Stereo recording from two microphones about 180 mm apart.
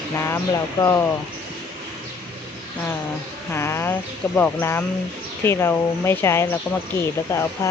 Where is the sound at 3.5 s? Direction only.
15° left (ahead or behind).